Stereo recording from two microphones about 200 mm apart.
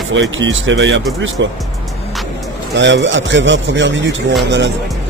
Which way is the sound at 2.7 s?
65° right (ahead or behind).